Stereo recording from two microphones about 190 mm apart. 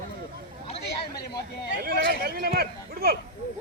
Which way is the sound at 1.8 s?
55° right (ahead or behind).